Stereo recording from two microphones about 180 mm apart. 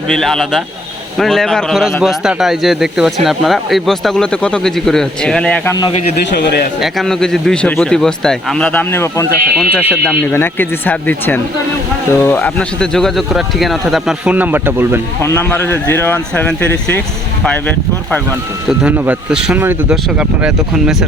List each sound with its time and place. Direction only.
0.1 s speech: centre (ahead or behind)
6.3 s speech: 60° left (ahead or behind)
6.8 s speech: 5° left (ahead or behind); by 15.0 s 10° right (ahead or behind)
15.2 s speech: 10° left (ahead or behind)
18.7 s speech: 5° right (ahead or behind)